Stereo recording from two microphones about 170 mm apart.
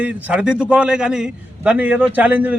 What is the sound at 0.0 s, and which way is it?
A man's voice, 5° right (ahead or behind).